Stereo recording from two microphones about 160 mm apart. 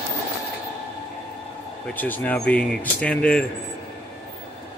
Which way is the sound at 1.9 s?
10° left (ahead or behind).